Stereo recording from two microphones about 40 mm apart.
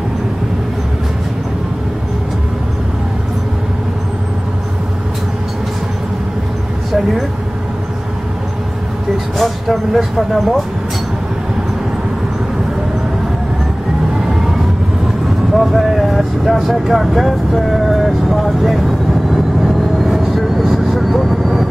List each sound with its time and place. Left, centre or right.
9.4 s speech: centre
15.5 s vehicle: centre